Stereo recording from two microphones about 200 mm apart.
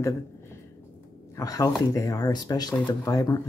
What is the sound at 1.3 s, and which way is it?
Speech, 20° left (ahead or behind).